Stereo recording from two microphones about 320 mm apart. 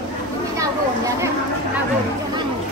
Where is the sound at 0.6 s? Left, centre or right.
Centre.